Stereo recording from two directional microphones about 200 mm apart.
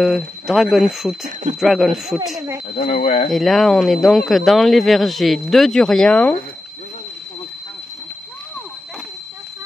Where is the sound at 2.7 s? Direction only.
35° left (ahead or behind).